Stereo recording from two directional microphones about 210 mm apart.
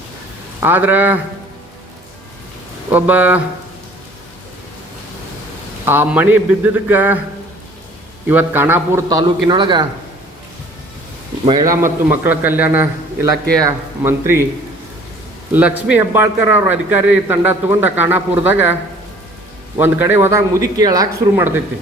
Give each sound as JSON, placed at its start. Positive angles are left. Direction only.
{"t": 0.6, "sound": "a man's voice", "side_deg": -10}
{"t": 2.9, "sound": "a man's voice", "side_deg": -10}
{"t": 5.8, "sound": "a man's voice", "side_deg": -10}
{"t": 8.3, "sound": "a man's voice", "side_deg": -10}
{"t": 11.4, "sound": "a man's voice", "side_deg": -15}
{"t": 15.9, "sound": "a man's voice", "side_deg": -10}
{"t": 19.8, "sound": "a man's voice", "side_deg": -10}